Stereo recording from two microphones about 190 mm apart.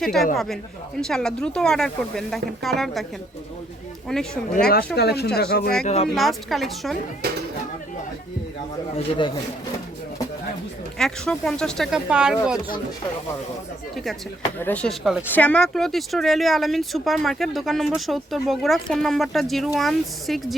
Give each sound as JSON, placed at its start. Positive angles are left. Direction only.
{"t": 0.0, "sound": "speech", "side_deg": 0}
{"t": 4.9, "sound": "speech", "side_deg": 60}
{"t": 5.8, "sound": "speech", "side_deg": 35}
{"t": 6.1, "sound": "speech", "side_deg": 0}
{"t": 9.0, "sound": "a man's voice", "side_deg": 25}
{"t": 10.9, "sound": "speech", "side_deg": 5}
{"t": 13.9, "sound": "speech", "side_deg": 0}